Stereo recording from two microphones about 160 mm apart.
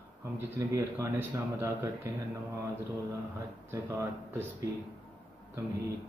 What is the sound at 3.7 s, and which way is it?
Speech, 15° right (ahead or behind).